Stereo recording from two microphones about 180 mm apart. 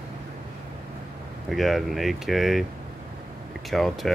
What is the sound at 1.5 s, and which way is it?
Speech, centre (ahead or behind).